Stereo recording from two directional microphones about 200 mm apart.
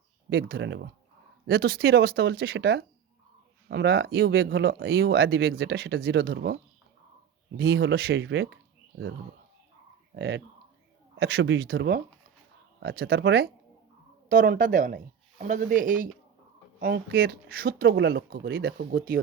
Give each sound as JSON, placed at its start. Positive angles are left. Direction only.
{"t": 0.3, "sound": "speech", "side_deg": -55}
{"t": 10.2, "sound": "speech", "side_deg": -60}
{"t": 14.3, "sound": "speech", "side_deg": -40}